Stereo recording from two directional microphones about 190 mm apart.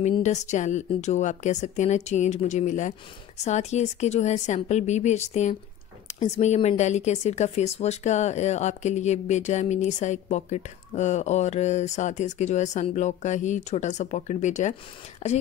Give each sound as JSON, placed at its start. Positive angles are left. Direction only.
{"t": 0.2, "sound": "speech", "side_deg": 35}